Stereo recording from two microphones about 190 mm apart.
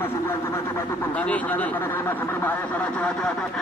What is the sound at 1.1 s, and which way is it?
A man's voice, 5° left (ahead or behind).